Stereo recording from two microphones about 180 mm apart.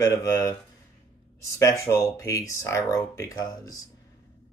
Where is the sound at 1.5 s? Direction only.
15° left (ahead or behind).